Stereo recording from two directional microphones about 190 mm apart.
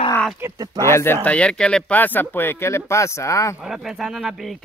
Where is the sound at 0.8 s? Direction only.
15° left (ahead or behind).